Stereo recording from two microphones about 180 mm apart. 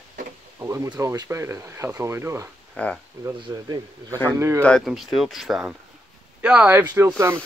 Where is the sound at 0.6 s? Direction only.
15° right (ahead or behind).